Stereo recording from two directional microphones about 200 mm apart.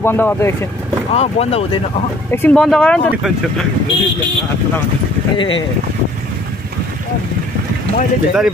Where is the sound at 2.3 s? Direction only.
10° left (ahead or behind).